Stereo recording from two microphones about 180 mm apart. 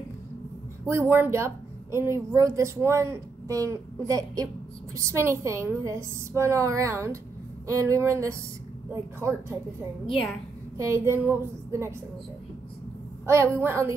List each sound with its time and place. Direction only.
0.8 s a woman's voice: 15° right (ahead or behind)
10.8 s a woman's voice: 15° right (ahead or behind)
13.3 s a woman's voice: 15° right (ahead or behind)